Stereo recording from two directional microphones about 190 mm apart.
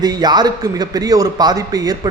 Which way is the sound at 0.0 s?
20° right (ahead or behind).